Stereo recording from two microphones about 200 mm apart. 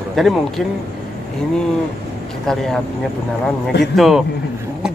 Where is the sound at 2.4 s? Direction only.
Centre (ahead or behind).